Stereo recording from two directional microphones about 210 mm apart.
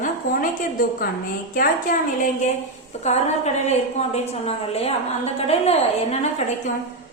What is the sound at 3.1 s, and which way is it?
A woman's voice, 30° left (ahead or behind).